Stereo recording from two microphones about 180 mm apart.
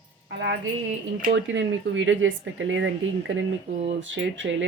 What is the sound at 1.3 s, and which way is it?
Speech, 90° right.